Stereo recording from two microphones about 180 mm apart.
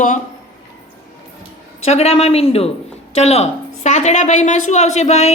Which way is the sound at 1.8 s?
35° left (ahead or behind).